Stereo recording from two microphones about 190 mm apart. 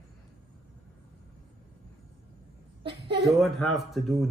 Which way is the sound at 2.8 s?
30° right (ahead or behind).